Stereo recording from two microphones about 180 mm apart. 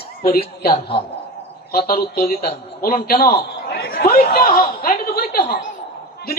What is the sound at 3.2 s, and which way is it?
Speech, 35° left (ahead or behind).